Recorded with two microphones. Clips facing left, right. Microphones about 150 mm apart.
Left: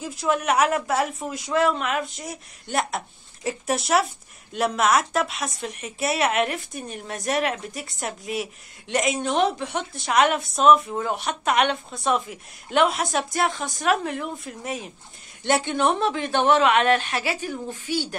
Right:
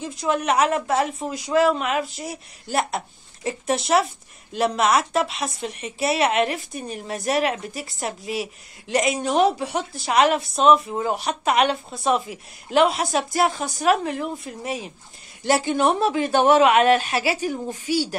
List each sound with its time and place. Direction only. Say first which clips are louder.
0.0 s speech: right 1 dB; 5° left (ahead or behind)
5.2 s speech: right 2 dB; 30° right (ahead or behind)
5.8 s a woman's voice: right 3 dB; centre (ahead or behind)
17.8 s speech: right 4 dB; 40° right (ahead or behind)